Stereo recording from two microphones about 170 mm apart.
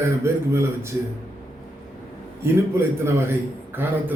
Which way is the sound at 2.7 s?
15° right (ahead or behind).